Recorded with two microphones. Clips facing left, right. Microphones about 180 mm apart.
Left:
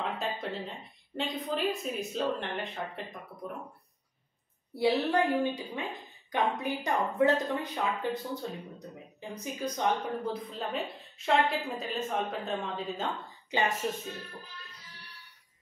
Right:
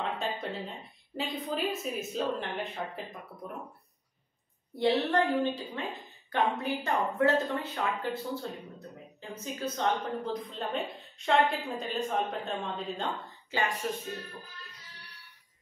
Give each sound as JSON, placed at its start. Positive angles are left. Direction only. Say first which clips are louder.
{"t": 0.0, "sound": "a woman's voice", "louder": "even", "side_deg": 0}
{"t": 4.7, "sound": "speech", "louder": "even", "side_deg": 10}
{"t": 13.5, "sound": "speech", "louder": "left 2 dB", "side_deg": 20}